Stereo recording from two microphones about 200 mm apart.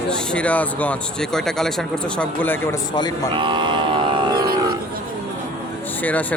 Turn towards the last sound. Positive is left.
turn(degrees=10)  # may be behind; listen again after turning